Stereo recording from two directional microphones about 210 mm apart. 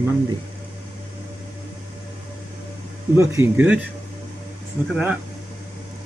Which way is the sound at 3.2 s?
15° right (ahead or behind).